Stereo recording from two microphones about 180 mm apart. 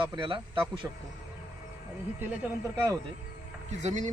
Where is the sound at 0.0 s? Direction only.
30° right (ahead or behind).